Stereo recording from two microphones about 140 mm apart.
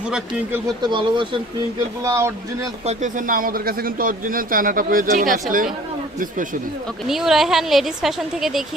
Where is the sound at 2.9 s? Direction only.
65° right (ahead or behind).